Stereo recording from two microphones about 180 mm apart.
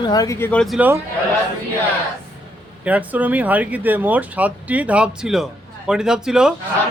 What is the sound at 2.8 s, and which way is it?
Speech, 10° right (ahead or behind).